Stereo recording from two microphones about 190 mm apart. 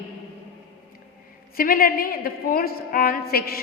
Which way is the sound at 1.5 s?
50° left (ahead or behind).